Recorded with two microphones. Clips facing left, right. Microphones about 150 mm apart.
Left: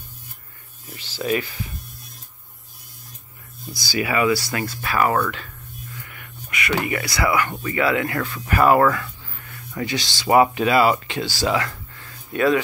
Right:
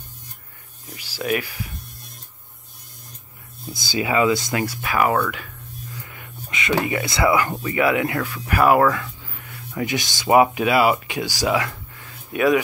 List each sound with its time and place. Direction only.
0.9 s speech: 10° right (ahead or behind)
3.7 s speech: 20° right (ahead or behind)
5.9 s a sound: 20° right (ahead or behind)
7.6 s speech: 15° right (ahead or behind)